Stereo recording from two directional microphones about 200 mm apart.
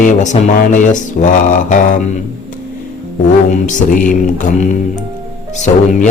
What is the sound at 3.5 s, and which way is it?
Speech, 40° left (ahead or behind).